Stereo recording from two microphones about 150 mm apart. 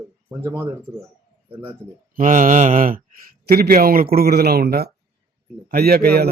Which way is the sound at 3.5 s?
85° right.